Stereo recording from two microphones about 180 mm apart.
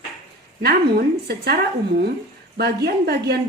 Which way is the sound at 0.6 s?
60° right (ahead or behind).